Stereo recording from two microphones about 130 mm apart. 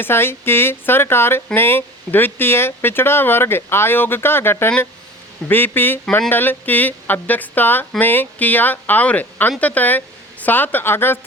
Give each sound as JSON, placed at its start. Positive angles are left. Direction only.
{"t": 0.0, "sound": "speech", "side_deg": 20}